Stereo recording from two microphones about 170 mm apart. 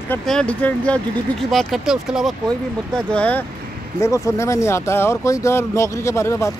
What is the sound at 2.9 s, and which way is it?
Speech, 5° left (ahead or behind).